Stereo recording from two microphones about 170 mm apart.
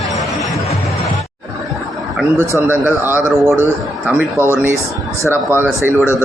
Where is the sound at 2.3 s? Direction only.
15° right (ahead or behind).